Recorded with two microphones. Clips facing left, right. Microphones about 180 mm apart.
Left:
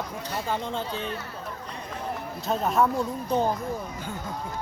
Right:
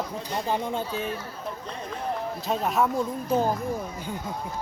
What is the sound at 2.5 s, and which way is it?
Speech, centre (ahead or behind).